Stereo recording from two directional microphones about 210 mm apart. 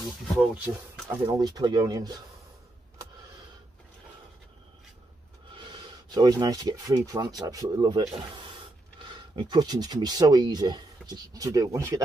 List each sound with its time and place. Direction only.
1.0 s speech: 20° right (ahead or behind)
5.6 s speech: 20° right (ahead or behind)
9.1 s speech: 20° right (ahead or behind)